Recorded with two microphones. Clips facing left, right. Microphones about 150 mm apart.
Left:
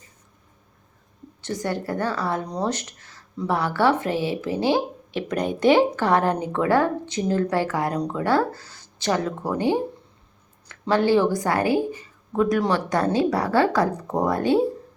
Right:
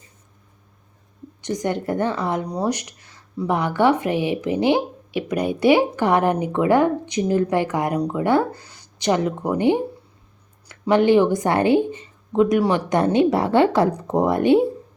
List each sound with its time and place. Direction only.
1.4 s a woman's voice: 15° right (ahead or behind)